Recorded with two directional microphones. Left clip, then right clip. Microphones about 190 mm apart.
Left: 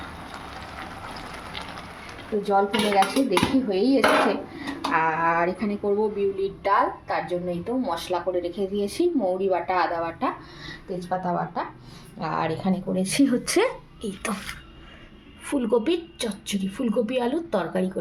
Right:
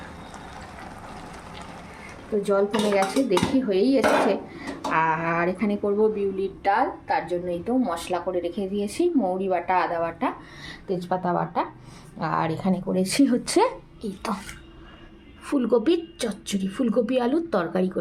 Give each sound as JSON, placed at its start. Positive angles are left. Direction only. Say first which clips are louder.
{"t": 2.4, "sound": "dishes", "louder": "left 1 dB", "side_deg": -10}
{"t": 11.3, "sound": "speech", "louder": "right 4 dB", "side_deg": -20}
{"t": 12.2, "sound": "dishes", "louder": "right 1 dB", "side_deg": -10}
{"t": 15.4, "sound": "a woman's voice", "louder": "right 2 dB", "side_deg": 0}